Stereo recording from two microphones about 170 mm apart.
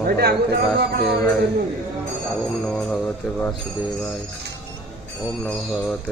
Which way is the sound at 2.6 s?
5° left (ahead or behind).